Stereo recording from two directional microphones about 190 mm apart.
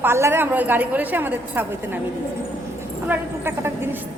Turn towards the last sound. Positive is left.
turn(degrees=-10)  # may be behind; listen again after turning